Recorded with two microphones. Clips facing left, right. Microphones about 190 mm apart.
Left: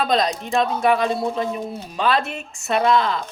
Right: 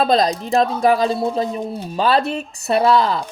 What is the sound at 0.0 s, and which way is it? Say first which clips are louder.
Speech: right 4 dB; 35° right (ahead or behind).